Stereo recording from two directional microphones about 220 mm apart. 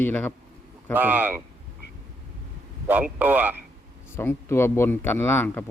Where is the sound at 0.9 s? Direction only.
10° right (ahead or behind).